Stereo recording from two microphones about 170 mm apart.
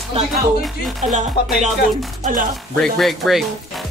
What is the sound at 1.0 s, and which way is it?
Music, 45° right (ahead or behind).